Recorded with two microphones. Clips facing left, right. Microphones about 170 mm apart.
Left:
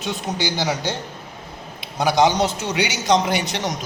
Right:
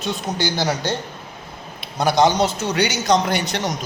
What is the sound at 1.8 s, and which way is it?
A man's voice, 10° left (ahead or behind).